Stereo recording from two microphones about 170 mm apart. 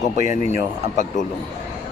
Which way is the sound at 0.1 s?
45° left (ahead or behind).